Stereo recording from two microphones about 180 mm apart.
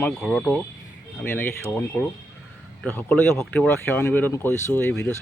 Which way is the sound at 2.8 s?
10° left (ahead or behind).